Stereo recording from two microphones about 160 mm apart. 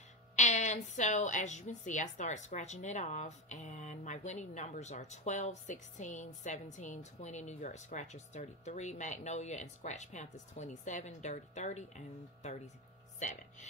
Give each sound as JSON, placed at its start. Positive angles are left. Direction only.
{"t": 0.4, "sound": "a woman's voice", "side_deg": 45}